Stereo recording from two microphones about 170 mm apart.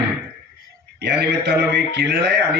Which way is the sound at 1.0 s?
75° right (ahead or behind).